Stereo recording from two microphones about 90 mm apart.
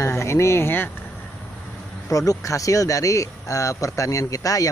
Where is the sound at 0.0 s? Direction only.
30° left (ahead or behind).